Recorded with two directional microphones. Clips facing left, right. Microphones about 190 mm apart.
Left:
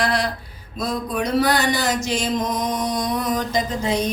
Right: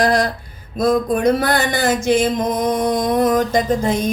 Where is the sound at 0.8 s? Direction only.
50° right (ahead or behind).